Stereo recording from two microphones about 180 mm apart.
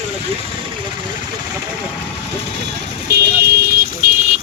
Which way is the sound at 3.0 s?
60° right (ahead or behind).